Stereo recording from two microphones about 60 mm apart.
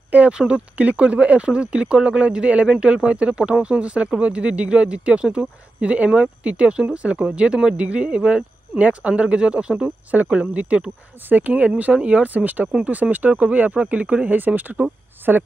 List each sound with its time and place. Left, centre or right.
0.1 s speech: centre
12.7 s speech: centre
13.1 s speech: right